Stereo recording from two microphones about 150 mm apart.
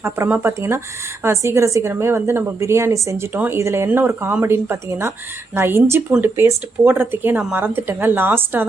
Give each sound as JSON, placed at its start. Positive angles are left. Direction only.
{"t": 0.0, "sound": "a woman's voice", "side_deg": -15}